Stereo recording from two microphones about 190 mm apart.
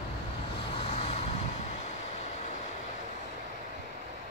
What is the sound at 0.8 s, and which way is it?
Vehicle, 35° left (ahead or behind).